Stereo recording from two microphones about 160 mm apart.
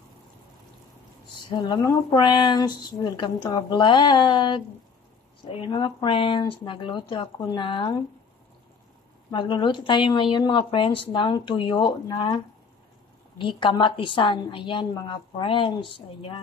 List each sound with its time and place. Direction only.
1.5 s a woman's voice: 30° left (ahead or behind)
9.3 s a woman's voice: 30° left (ahead or behind)
13.4 s a woman's voice: 30° left (ahead or behind)